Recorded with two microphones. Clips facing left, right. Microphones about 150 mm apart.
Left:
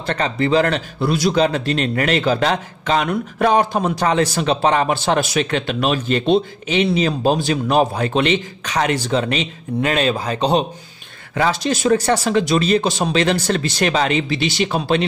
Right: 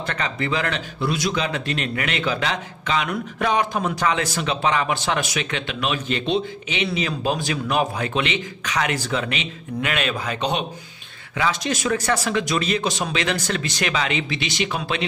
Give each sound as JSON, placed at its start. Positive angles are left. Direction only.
{"t": 0.0, "sound": "speech", "side_deg": 35}